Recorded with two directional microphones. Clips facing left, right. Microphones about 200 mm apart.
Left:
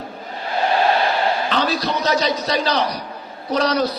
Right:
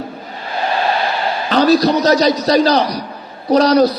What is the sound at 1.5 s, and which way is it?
A man's voice, 40° right (ahead or behind).